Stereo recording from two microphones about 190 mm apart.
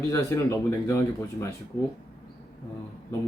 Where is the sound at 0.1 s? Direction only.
15° left (ahead or behind).